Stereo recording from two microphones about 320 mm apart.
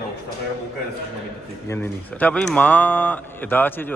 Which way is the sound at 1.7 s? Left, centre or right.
Centre.